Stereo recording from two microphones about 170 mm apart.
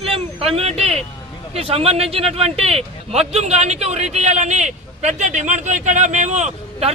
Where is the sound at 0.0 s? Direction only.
35° right (ahead or behind).